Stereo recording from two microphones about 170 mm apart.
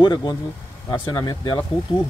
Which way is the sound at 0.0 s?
25° left (ahead or behind).